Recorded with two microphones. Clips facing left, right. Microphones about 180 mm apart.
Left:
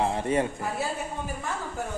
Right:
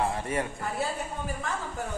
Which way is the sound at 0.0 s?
20° left (ahead or behind).